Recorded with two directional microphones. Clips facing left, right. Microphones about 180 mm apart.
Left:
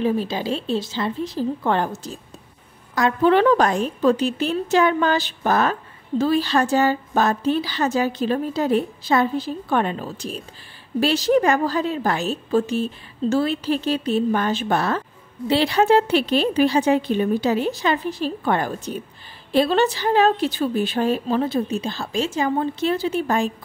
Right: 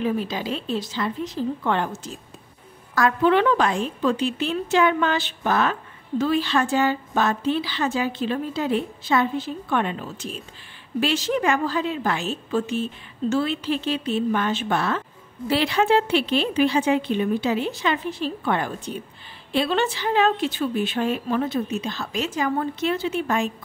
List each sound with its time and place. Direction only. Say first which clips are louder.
0.0 s a woman's voice: left 3 dB; 30° left (ahead or behind)
2.9 s a sound: left 1 dB; 20° left (ahead or behind)
3.2 s a woman's voice: left 4 dB; 40° left (ahead or behind)